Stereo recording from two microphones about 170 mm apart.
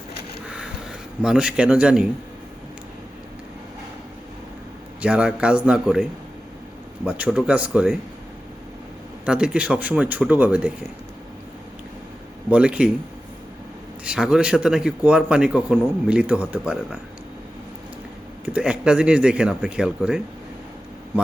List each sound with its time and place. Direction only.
0.5 s a sound: 5° right (ahead or behind)
4.9 s speech: 5° right (ahead or behind)
9.2 s speech: 5° right (ahead or behind)
12.5 s speech: 5° right (ahead or behind)
14.0 s speech: 5° right (ahead or behind)
18.4 s speech: 5° right (ahead or behind)